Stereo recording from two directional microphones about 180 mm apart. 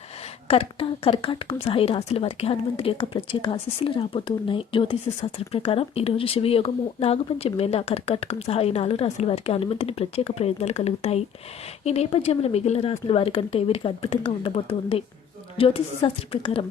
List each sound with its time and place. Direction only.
0.4 s speech: 30° left (ahead or behind)